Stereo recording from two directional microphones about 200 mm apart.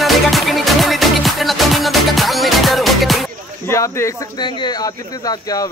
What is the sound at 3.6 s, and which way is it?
Speech, 15° left (ahead or behind).